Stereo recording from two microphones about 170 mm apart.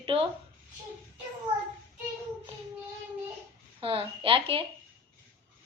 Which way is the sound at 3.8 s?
30° right (ahead or behind).